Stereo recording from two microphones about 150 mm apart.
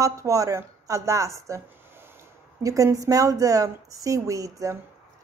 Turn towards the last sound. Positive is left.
turn(degrees=-20)  # may be behind; listen again after turning